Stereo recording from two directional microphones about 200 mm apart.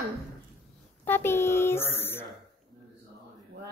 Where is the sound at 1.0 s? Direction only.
10° left (ahead or behind).